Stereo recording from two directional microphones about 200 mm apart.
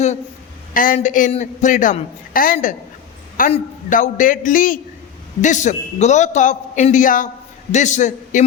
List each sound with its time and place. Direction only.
0.7 s a man's voice: 45° left (ahead or behind)